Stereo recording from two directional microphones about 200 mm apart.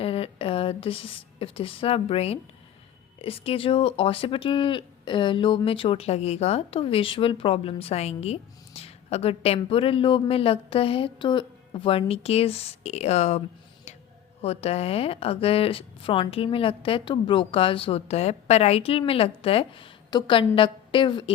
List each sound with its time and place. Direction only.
0.0 s a woman's voice: 30° left (ahead or behind)
14.4 s speech: 30° left (ahead or behind)